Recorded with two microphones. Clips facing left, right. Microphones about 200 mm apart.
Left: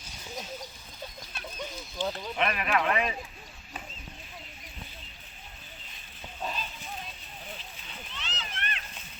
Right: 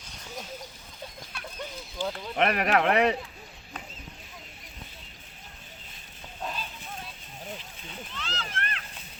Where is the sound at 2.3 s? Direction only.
65° right (ahead or behind).